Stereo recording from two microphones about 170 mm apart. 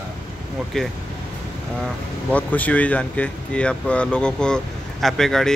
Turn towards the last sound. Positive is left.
turn(degrees=0)  # may be behind; listen again after turning